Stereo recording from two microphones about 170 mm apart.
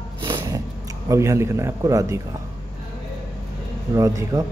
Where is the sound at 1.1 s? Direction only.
15° right (ahead or behind).